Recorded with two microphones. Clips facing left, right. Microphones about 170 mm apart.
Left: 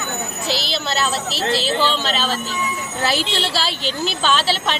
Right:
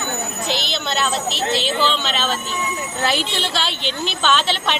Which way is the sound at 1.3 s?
35° left (ahead or behind).